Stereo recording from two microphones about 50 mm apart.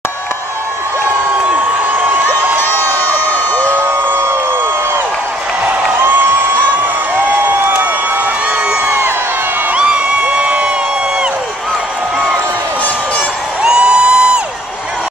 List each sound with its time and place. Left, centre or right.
7.2 s a sound: right
9.8 s crowd: right
13.6 s music: centre